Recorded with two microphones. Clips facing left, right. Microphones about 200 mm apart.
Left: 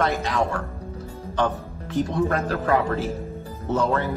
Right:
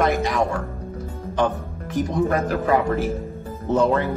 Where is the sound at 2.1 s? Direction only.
15° right (ahead or behind).